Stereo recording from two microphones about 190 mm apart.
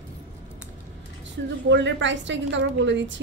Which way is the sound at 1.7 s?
70° right (ahead or behind).